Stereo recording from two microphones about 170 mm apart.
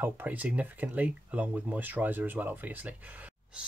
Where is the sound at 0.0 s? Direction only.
10° right (ahead or behind).